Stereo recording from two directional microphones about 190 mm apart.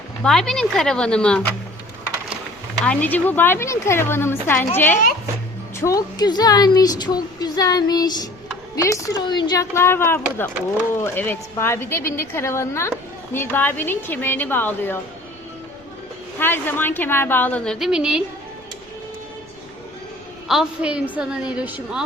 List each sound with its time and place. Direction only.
0.2 s a woman's voice: centre (ahead or behind)
2.8 s a woman's voice: 10° left (ahead or behind)
6.0 s a woman's voice: 20° left (ahead or behind)
16.4 s a woman's voice: 10° left (ahead or behind)
20.5 s a woman's voice: 5° right (ahead or behind)